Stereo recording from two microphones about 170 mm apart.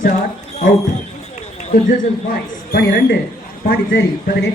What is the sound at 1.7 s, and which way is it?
A man's voice, 60° left (ahead or behind).